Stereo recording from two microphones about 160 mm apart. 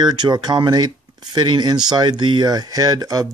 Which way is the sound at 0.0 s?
25° right (ahead or behind).